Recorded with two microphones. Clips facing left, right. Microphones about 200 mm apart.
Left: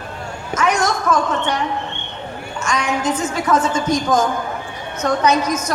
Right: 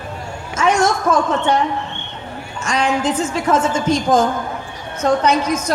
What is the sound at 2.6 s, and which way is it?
A woman's voice, 30° right (ahead or behind).